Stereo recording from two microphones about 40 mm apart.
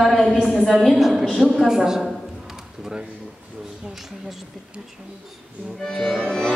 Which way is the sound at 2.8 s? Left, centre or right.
Centre.